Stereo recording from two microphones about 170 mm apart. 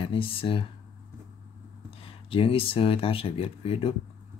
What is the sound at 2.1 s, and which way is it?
Speech, 35° left (ahead or behind).